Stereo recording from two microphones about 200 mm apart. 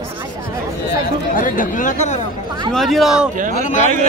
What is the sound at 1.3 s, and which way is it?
Speech, 40° left (ahead or behind).